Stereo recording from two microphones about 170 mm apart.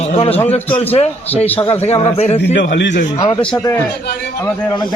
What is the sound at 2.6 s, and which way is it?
Speech, 90° left.